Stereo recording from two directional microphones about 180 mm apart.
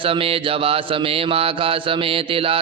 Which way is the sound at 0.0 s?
30° right (ahead or behind).